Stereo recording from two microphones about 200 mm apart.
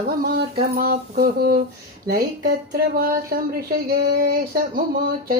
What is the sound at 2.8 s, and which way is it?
Speech, 50° right (ahead or behind).